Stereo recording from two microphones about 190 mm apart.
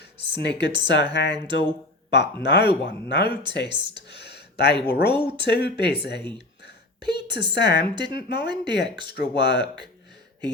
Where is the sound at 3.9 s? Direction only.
60° left (ahead or behind).